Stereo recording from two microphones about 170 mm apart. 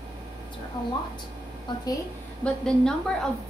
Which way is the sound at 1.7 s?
25° left (ahead or behind).